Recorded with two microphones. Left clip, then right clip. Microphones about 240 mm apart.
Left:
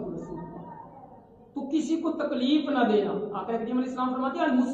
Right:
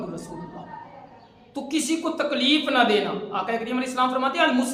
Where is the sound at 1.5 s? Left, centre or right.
Right.